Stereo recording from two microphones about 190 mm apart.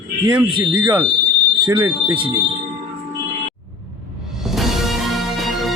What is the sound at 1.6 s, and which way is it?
Speech, 20° right (ahead or behind).